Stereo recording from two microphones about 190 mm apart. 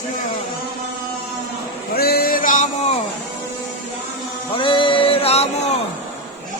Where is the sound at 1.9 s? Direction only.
55° left (ahead or behind).